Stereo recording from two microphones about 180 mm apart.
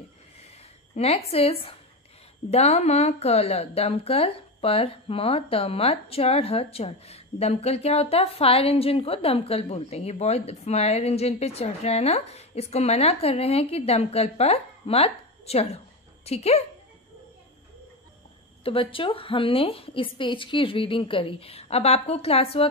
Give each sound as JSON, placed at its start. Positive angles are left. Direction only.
{"t": 0.9, "sound": "a woman's voice", "side_deg": 35}
{"t": 18.6, "sound": "a woman's voice", "side_deg": 30}